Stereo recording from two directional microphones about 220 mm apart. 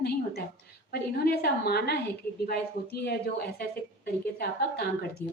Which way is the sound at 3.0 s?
45° left (ahead or behind).